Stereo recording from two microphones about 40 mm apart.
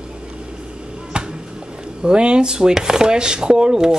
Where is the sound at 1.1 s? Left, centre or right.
Right.